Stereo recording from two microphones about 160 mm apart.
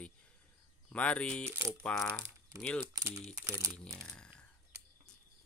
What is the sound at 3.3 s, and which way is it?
Speech, 20° right (ahead or behind).